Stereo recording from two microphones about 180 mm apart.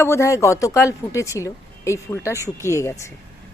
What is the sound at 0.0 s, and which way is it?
A woman's voice, 15° left (ahead or behind).